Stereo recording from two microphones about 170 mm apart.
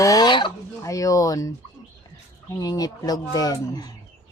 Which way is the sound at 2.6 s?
20° left (ahead or behind).